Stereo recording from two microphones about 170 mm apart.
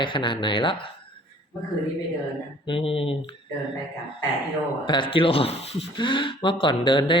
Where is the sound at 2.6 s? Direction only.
30° left (ahead or behind).